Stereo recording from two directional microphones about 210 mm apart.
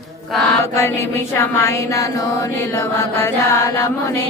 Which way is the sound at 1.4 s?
15° left (ahead or behind).